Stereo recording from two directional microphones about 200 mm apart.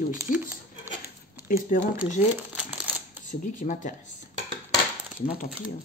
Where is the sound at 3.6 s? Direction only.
40° left (ahead or behind).